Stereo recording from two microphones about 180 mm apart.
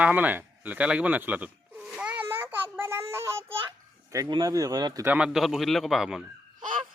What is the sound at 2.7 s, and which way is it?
Child singing, 15° right (ahead or behind).